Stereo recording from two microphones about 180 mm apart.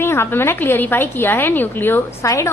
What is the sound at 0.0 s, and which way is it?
A woman's voice, 15° left (ahead or behind).